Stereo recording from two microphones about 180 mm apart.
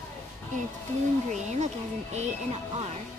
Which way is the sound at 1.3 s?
40° right (ahead or behind).